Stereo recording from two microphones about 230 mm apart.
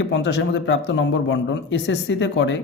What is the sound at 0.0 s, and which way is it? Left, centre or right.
Speech, left.